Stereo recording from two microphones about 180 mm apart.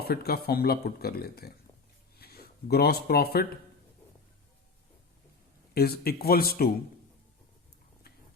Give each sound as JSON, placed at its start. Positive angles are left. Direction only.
{"t": 0.0, "sound": "speech", "side_deg": 60}
{"t": 5.7, "sound": "speech", "side_deg": 60}